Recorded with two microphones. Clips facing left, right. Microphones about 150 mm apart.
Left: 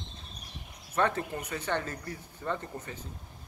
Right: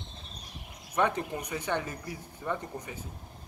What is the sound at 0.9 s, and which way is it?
Speech, 15° right (ahead or behind).